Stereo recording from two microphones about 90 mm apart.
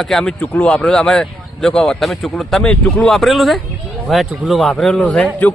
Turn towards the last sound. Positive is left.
turn(degrees=10)  # may be behind; listen again after turning